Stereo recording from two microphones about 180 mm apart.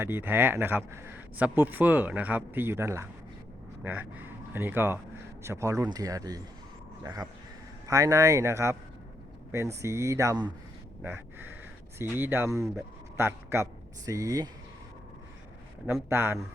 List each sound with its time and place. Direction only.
0.0 s speech: 10° right (ahead or behind)
11.0 s a sound: 10° right (ahead or behind)
11.9 s a man's voice: 10° right (ahead or behind)
16.0 s speech: 10° right (ahead or behind)